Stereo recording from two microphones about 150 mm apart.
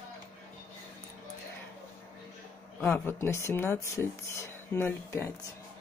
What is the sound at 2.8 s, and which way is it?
Speech, 10° left (ahead or behind).